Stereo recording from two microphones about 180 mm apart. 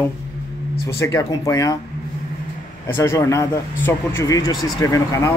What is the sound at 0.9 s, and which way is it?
Speech, 15° left (ahead or behind).